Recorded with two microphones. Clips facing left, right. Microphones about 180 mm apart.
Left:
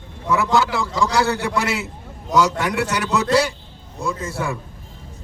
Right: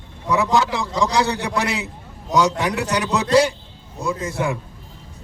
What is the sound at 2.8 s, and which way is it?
A man's voice, 15° right (ahead or behind).